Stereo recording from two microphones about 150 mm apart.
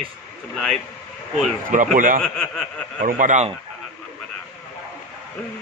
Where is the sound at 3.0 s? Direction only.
60° right (ahead or behind).